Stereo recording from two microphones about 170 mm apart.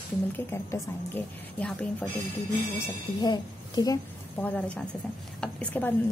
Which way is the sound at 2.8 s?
25° left (ahead or behind).